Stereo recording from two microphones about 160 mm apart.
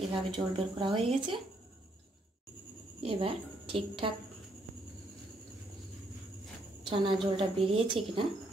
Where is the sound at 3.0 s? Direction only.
35° right (ahead or behind).